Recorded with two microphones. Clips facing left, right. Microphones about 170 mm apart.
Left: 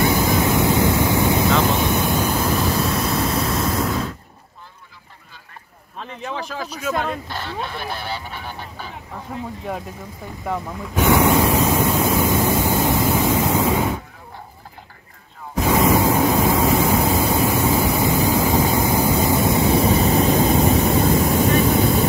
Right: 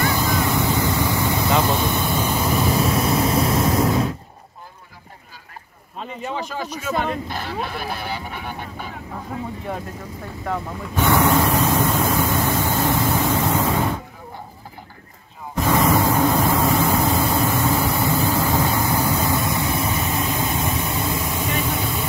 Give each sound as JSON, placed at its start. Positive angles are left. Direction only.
{"t": 0.0, "sound": "waves", "side_deg": 15}
{"t": 1.8, "sound": "vehicle", "side_deg": 5}
{"t": 3.8, "sound": "a sound", "side_deg": -30}
{"t": 6.0, "sound": "speech", "side_deg": -5}
{"t": 10.4, "sound": "ocean", "side_deg": 10}
{"t": 15.5, "sound": "a sound", "side_deg": 5}
{"t": 16.3, "sound": "vehicle", "side_deg": 0}